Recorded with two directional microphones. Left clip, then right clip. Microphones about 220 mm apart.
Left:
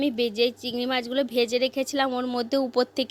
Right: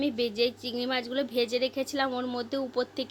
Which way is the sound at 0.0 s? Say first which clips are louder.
Left 4 dB; 35° left (ahead or behind).